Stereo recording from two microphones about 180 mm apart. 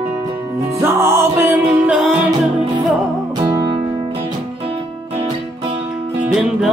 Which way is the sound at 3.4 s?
20° right (ahead or behind).